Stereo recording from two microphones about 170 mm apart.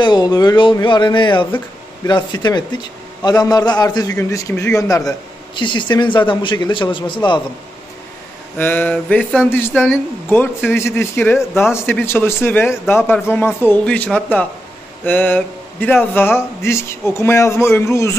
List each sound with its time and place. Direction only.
0.0 s a man's voice: 25° left (ahead or behind)
8.5 s speech: 10° left (ahead or behind)